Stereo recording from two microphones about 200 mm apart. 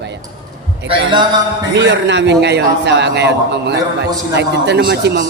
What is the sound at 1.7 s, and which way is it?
A man's voice, 60° right (ahead or behind).